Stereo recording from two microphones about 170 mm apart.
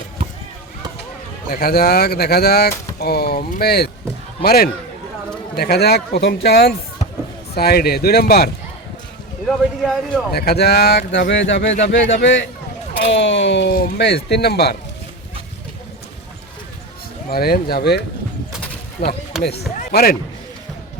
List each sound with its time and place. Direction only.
1.5 s speech: 65° left (ahead or behind)
9.5 s speech: centre (ahead or behind)
10.3 s a man's voice: 70° left (ahead or behind)
17.2 s speech: 65° left (ahead or behind)
19.0 s speech: 35° left (ahead or behind)
19.9 s speech: 65° left (ahead or behind)